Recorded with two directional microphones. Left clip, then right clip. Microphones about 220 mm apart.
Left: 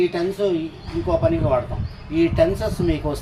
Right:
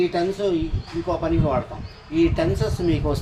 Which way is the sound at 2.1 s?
15° right (ahead or behind).